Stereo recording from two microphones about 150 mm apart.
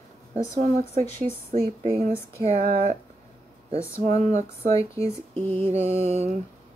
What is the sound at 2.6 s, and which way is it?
Speech, 75° right (ahead or behind).